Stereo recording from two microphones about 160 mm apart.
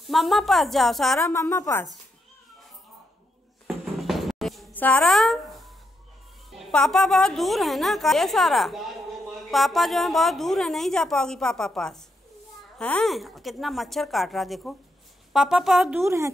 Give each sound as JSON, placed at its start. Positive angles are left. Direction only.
{"t": 0.1, "sound": "a woman's voice", "side_deg": 0}
{"t": 1.2, "sound": "a woman's voice", "side_deg": 20}
{"t": 3.6, "sound": "music", "side_deg": 0}
{"t": 4.7, "sound": "a woman's voice", "side_deg": 10}